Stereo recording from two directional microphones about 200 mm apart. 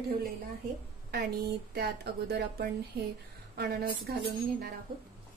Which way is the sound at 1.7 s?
55° right (ahead or behind).